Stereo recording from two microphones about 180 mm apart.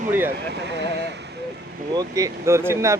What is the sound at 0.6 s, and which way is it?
Speech, 70° right (ahead or behind).